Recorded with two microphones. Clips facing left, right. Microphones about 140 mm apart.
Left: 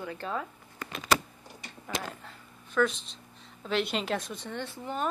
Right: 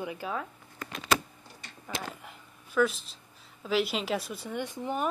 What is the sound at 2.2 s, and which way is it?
Speech, 10° right (ahead or behind).